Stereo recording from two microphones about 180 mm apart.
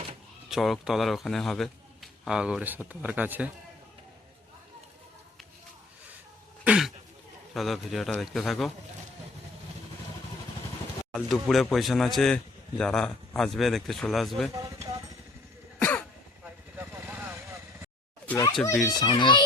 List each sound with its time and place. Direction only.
0.5 s speech: centre (ahead or behind)
6.7 s a sound: 5° right (ahead or behind)
7.5 s speech: centre (ahead or behind)
11.1 s speech: centre (ahead or behind)
15.8 s cough: 10° left (ahead or behind)
16.7 s vehicle: 10° right (ahead or behind)
18.3 s a child's voice: 20° left (ahead or behind)